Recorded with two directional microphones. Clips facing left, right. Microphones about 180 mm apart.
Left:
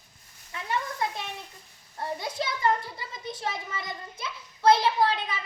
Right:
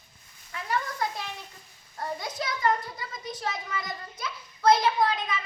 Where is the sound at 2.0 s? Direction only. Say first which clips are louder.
Left 1 dB; 25° left (ahead or behind).